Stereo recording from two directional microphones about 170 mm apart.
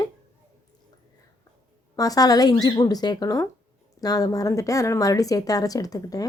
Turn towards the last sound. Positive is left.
turn(degrees=20)  # may be behind; listen again after turning